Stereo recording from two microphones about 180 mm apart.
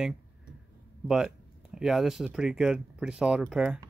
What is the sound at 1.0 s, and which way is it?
Speech, 5° right (ahead or behind).